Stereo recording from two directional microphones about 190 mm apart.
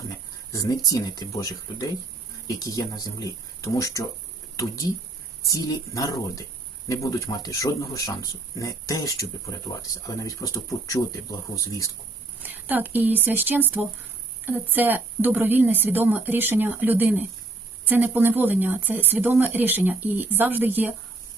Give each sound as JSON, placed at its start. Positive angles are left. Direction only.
{"t": 0.5, "sound": "speech", "side_deg": 20}
{"t": 5.4, "sound": "speech", "side_deg": 20}
{"t": 12.4, "sound": "speech", "side_deg": -10}